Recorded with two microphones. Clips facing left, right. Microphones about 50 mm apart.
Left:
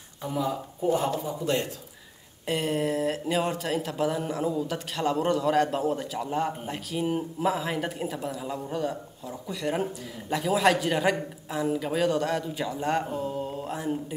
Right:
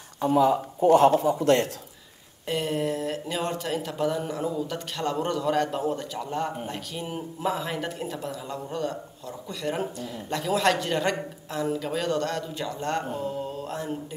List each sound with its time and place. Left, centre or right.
0.2 s a man's voice: right
2.4 s a man's voice: centre
13.2 s mantra: centre